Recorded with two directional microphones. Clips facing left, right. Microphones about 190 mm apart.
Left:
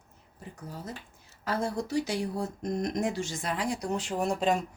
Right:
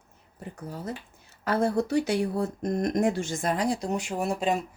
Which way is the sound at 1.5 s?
60° right (ahead or behind).